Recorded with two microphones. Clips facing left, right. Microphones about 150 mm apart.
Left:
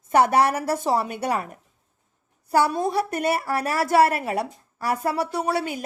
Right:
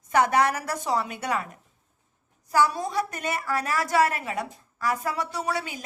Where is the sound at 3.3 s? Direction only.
30° left (ahead or behind).